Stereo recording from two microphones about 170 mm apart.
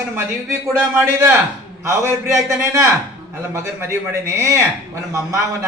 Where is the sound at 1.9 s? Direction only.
15° right (ahead or behind).